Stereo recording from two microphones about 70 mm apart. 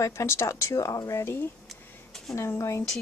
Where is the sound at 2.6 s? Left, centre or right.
Left.